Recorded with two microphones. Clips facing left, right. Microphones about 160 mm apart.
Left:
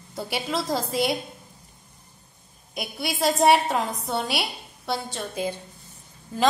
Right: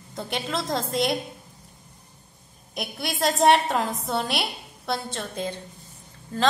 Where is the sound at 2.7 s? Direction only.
Centre (ahead or behind).